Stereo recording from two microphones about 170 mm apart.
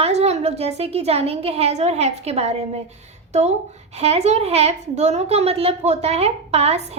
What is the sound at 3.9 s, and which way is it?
A woman's voice, 40° right (ahead or behind).